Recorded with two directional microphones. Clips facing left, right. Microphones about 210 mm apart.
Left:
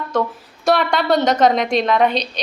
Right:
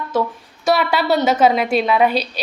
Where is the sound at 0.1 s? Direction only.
5° right (ahead or behind).